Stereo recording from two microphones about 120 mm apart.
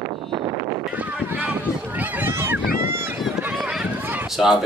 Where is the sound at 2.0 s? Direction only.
15° right (ahead or behind).